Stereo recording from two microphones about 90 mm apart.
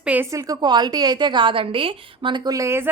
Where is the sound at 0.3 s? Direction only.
40° right (ahead or behind); by 2.5 s 60° right (ahead or behind).